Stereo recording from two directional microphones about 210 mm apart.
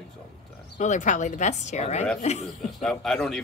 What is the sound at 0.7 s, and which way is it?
Speech, 35° left (ahead or behind).